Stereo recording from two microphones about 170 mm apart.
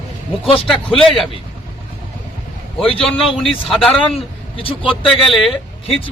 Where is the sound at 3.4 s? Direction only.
Centre (ahead or behind).